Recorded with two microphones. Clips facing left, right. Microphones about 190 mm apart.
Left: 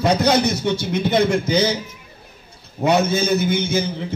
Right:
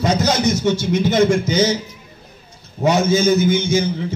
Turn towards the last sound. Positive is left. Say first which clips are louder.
# right 3 dB
turn(degrees=60)  # may be behind; listen again after turning